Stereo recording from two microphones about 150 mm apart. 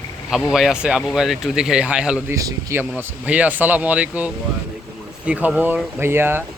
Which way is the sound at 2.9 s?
10° right (ahead or behind).